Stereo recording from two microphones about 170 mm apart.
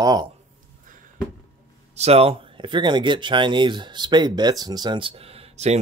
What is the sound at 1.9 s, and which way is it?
Speech, 40° right (ahead or behind).